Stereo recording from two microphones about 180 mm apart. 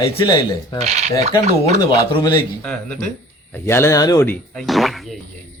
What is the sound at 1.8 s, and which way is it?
Speech, 25° left (ahead or behind).